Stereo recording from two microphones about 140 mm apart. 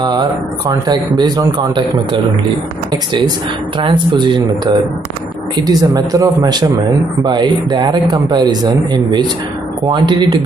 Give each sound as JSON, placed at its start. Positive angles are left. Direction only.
{"t": 0.0, "sound": "speech", "side_deg": -30}
{"t": 3.7, "sound": "speech", "side_deg": -35}